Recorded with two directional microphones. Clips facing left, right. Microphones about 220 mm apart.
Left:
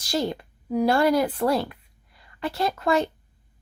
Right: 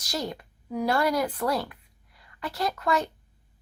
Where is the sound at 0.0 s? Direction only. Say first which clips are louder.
Left 6 dB; 30° left (ahead or behind).